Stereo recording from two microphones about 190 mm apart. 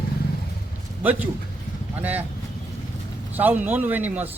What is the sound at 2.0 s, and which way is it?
Speech, 10° right (ahead or behind).